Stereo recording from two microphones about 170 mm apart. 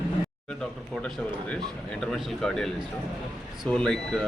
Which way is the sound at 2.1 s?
5° left (ahead or behind).